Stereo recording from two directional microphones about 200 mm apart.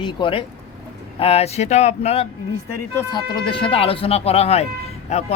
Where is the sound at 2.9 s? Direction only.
20° left (ahead or behind).